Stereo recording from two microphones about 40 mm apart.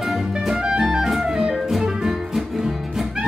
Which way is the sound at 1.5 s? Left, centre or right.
Centre.